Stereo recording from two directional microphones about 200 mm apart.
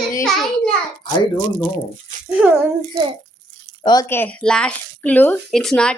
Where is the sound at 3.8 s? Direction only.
15° left (ahead or behind).